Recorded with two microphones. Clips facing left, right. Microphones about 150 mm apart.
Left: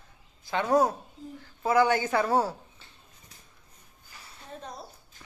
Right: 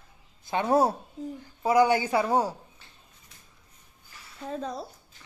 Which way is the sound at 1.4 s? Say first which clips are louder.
Right 2 dB; 15° right (ahead or behind).